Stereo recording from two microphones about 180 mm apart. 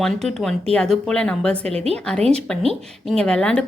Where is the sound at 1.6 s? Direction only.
35° right (ahead or behind).